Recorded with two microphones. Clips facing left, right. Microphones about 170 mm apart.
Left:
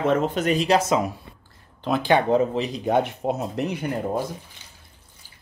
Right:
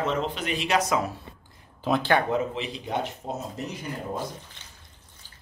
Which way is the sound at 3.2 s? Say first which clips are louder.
Left 8 dB; 65° left (ahead or behind).